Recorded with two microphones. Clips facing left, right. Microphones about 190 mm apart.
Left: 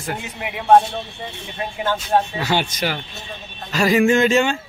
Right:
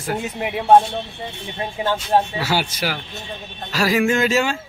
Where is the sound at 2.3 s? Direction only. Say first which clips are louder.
Left 1 dB; 5° right (ahead or behind).